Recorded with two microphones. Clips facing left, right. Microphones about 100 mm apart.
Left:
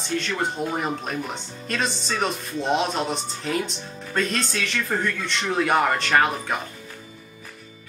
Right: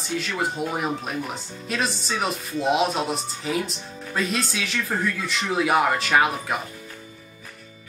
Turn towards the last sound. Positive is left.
turn(degrees=-5)  # may be behind; listen again after turning